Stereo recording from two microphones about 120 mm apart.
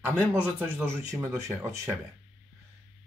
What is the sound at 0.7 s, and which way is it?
Speech, 20° right (ahead or behind).